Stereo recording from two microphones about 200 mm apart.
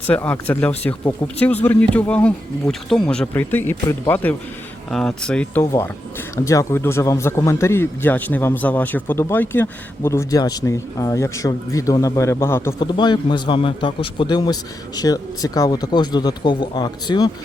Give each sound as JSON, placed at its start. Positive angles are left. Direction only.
{"t": 0.1, "sound": "speech", "side_deg": 10}